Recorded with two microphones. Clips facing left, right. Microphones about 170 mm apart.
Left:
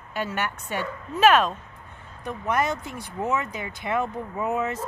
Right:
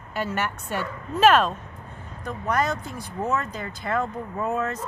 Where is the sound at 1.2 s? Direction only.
10° left (ahead or behind).